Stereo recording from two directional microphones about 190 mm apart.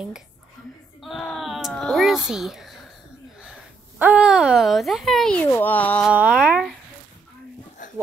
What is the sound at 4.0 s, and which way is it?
Speech, 5° right (ahead or behind).